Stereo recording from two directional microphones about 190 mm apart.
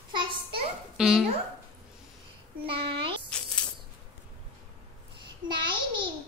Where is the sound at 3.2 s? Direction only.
5° left (ahead or behind).